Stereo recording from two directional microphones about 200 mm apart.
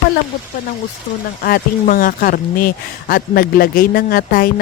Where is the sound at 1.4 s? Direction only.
45° left (ahead or behind).